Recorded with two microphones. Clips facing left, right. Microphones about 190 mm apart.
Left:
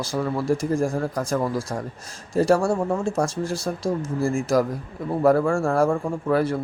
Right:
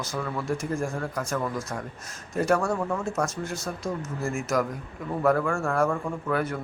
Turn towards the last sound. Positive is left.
turn(degrees=30)  # may be behind; listen again after turning